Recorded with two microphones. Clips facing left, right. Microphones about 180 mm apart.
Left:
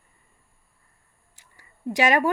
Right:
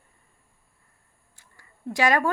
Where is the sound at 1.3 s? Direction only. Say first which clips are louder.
Even; 20° left (ahead or behind).